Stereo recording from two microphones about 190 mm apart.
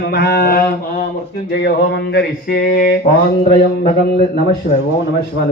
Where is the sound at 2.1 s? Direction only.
60° left (ahead or behind).